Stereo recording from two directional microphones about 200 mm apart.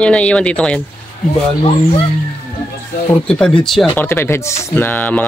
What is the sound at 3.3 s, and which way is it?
Speech, 5° left (ahead or behind).